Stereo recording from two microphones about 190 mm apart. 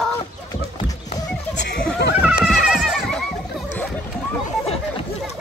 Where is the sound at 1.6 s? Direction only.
65° left (ahead or behind).